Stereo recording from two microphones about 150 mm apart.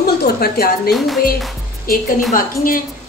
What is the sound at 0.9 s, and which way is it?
Speech, centre (ahead or behind).